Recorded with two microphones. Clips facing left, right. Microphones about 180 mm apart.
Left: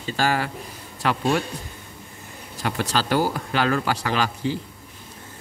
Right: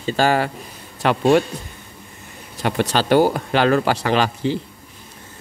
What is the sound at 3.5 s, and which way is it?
Speech, 25° right (ahead or behind).